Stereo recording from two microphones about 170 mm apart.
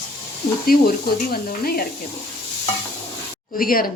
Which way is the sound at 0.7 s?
60° left (ahead or behind).